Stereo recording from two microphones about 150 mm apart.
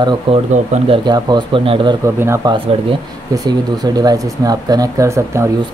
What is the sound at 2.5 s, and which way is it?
Speech, 30° right (ahead or behind).